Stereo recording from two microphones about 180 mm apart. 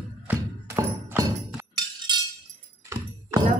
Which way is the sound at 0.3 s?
15° right (ahead or behind).